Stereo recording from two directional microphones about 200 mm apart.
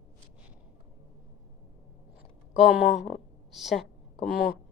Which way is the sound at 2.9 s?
35° left (ahead or behind).